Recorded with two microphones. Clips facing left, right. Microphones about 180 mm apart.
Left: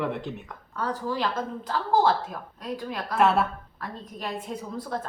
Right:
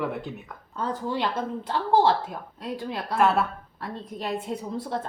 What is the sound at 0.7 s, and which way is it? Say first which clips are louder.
A woman's voice: even; 25° right (ahead or behind).